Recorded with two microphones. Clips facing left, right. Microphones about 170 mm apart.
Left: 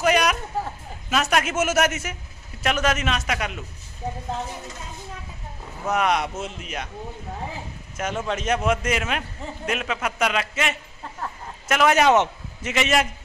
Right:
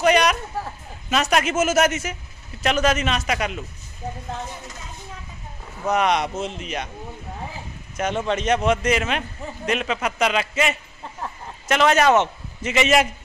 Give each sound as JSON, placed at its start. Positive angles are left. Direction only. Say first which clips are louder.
{"t": 0.0, "sound": "a sound", "louder": "right 3 dB", "side_deg": 5}
{"t": 1.1, "sound": "speech", "louder": "right 2 dB", "side_deg": 0}
{"t": 5.9, "sound": "speech", "louder": "right 2 dB", "side_deg": 0}
{"t": 8.0, "sound": "speech", "louder": "right 4 dB", "side_deg": 5}
{"t": 12.6, "sound": "speech", "louder": "right 3 dB", "side_deg": 0}